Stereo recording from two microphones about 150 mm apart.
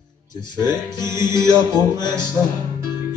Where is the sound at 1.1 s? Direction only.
25° left (ahead or behind).